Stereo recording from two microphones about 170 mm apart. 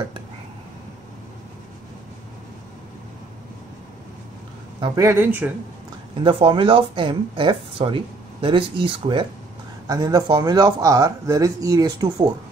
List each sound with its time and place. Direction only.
4.7 s speech: 30° right (ahead or behind)
5.0 s speech: 10° right (ahead or behind)
6.2 s speech: 30° right (ahead or behind)